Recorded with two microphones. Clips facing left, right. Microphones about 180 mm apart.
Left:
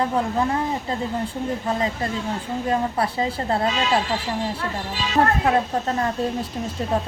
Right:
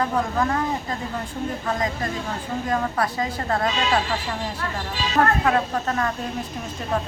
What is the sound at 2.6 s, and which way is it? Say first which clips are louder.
A woman's voice: left 2 dB; 30° left (ahead or behind).